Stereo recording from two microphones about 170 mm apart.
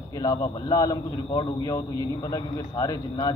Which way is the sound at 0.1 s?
20° left (ahead or behind).